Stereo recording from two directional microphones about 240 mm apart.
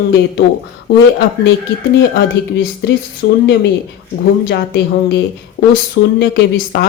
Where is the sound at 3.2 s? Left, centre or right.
Left.